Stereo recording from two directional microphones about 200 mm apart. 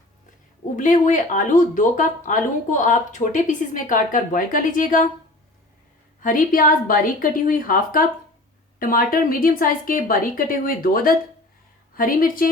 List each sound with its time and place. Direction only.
0.8 s speech: 40° left (ahead or behind)
6.2 s a woman's voice: 45° left (ahead or behind)